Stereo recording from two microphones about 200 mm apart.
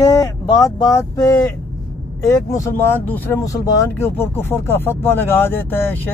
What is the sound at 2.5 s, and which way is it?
Speech, 15° left (ahead or behind).